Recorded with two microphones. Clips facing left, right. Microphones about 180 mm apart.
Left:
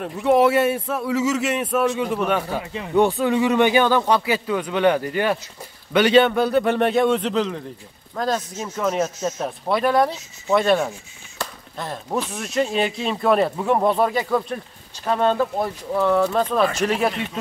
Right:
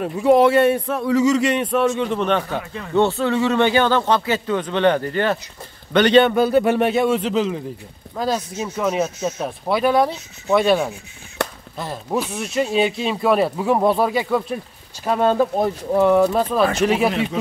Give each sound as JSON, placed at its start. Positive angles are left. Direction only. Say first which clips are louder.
{"t": 0.0, "sound": "speech", "louder": "right 3 dB", "side_deg": 0}
{"t": 8.9, "sound": "speech", "louder": "right 1 dB", "side_deg": 0}
{"t": 11.4, "sound": "a sound", "louder": "right 6 dB", "side_deg": -65}
{"t": 11.8, "sound": "speech", "louder": "right 2 dB", "side_deg": -5}